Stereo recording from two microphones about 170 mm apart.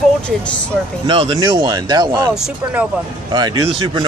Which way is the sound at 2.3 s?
5° right (ahead or behind).